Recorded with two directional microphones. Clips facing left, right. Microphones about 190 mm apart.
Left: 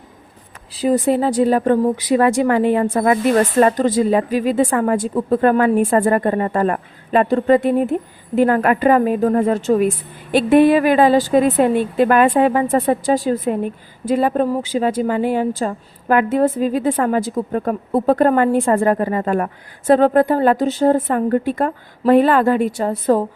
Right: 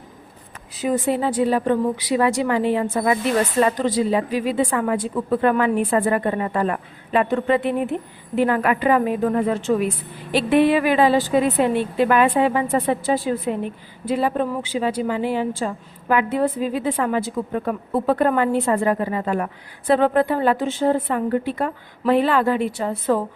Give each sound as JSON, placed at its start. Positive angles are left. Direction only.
{"t": 0.7, "sound": "a woman's voice", "side_deg": 35}